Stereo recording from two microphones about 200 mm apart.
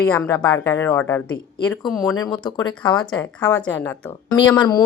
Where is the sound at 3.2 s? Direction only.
10° left (ahead or behind).